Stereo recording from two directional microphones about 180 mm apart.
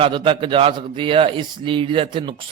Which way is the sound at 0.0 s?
30° right (ahead or behind).